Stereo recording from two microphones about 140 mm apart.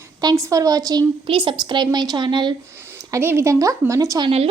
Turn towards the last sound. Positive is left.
turn(degrees=-30)  # may be behind; listen again after turning